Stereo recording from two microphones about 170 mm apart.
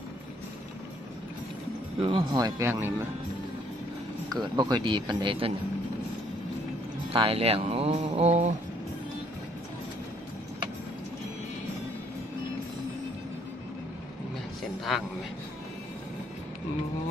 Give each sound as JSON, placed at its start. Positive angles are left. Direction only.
{"t": 2.0, "sound": "speech", "side_deg": -30}
{"t": 4.3, "sound": "speech", "side_deg": -25}
{"t": 7.1, "sound": "speech", "side_deg": -35}
{"t": 14.9, "sound": "speech", "side_deg": 0}